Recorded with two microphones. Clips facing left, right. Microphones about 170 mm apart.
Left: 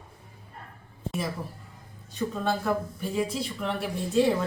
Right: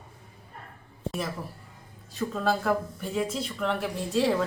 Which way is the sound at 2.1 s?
Centre (ahead or behind).